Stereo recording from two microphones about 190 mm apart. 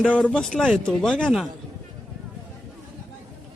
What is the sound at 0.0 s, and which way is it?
Speech, 5° left (ahead or behind).